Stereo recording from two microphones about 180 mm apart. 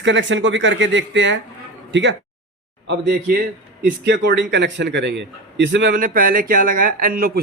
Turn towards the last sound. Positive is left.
turn(degrees=-55)  # may be behind; listen again after turning